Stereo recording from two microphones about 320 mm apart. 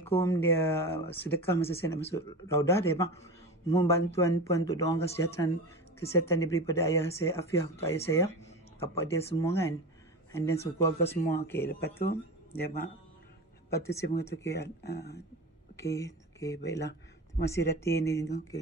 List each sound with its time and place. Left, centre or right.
0.0 s speech: centre
13.7 s speech: centre
14.3 s speech: left
15.7 s speech: centre
17.8 s speech: centre